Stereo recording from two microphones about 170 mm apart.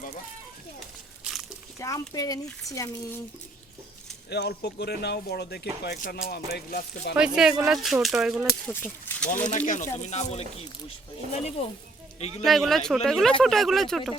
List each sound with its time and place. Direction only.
1.8 s speech: 20° left (ahead or behind)
4.3 s speech: 75° left (ahead or behind)
6.0 s speech: 65° left (ahead or behind)
7.2 s speech: 5° right (ahead or behind)
8.7 s speech: 15° left (ahead or behind)
9.5 s speech: 45° left (ahead or behind)
12.4 s speech: centre (ahead or behind)